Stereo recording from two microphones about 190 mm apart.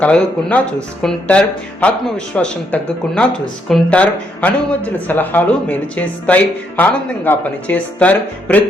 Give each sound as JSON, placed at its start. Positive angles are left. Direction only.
{"t": 0.0, "sound": "speech", "side_deg": 5}